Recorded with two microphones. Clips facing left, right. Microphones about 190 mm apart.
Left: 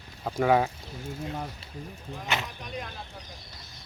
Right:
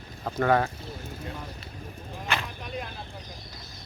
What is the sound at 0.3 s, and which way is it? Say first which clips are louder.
Speech: left 1 dB; 5° left (ahead or behind).